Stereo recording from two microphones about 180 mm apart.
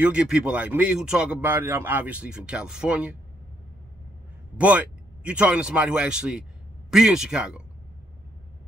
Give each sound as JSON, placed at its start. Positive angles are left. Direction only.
{"t": 0.0, "sound": "speech", "side_deg": -5}
{"t": 4.6, "sound": "speech", "side_deg": -5}